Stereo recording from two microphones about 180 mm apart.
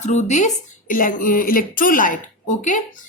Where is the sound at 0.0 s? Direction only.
40° left (ahead or behind).